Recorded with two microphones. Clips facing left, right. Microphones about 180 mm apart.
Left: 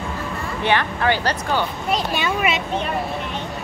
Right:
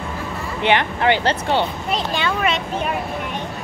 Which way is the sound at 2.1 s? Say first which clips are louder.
Even; 10° left (ahead or behind).